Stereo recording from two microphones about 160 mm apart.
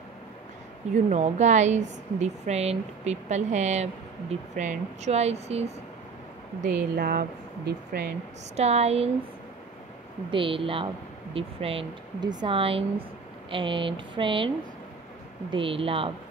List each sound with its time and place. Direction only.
0.9 s a woman's voice: 45° right (ahead or behind)
7.0 s speech: 70° right (ahead or behind)
8.5 s speech: 40° right (ahead or behind)
10.3 s speech: 35° right (ahead or behind)
15.5 s speech: 35° right (ahead or behind)